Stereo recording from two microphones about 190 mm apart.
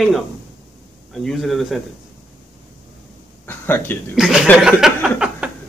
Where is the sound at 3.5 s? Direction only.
10° left (ahead or behind).